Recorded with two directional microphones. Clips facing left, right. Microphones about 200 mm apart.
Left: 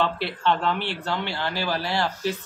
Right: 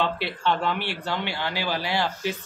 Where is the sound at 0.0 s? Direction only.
10° right (ahead or behind).